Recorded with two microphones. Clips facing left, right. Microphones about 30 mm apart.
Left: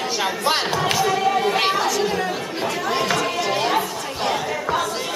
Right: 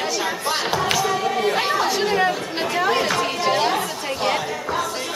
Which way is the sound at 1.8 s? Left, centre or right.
Right.